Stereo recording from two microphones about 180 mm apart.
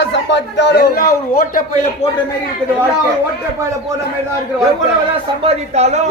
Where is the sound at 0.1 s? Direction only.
80° left.